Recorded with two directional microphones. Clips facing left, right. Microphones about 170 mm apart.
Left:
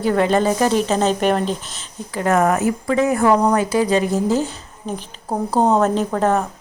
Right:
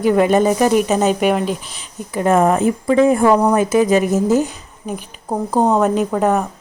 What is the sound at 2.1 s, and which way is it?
Speech, 25° right (ahead or behind).